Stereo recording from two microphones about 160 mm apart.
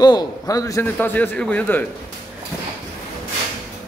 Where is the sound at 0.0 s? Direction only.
25° left (ahead or behind).